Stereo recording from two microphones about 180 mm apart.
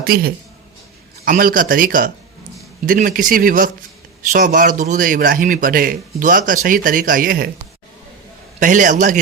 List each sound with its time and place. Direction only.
0.0 s a man's voice: 55° right (ahead or behind)
8.5 s a man's voice: 45° right (ahead or behind)